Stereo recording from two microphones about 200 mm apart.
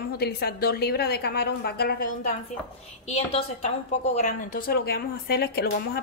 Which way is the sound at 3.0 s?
35° left (ahead or behind).